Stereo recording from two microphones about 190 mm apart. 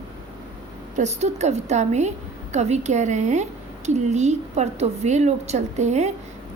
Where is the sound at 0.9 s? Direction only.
35° right (ahead or behind).